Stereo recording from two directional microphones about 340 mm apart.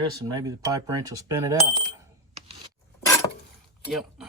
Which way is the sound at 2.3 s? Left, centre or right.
Centre.